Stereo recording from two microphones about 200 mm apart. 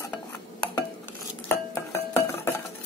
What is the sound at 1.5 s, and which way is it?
Dishes, 15° left (ahead or behind).